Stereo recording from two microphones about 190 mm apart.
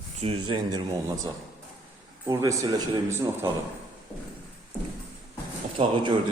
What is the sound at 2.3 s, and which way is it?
A man's voice, 15° right (ahead or behind).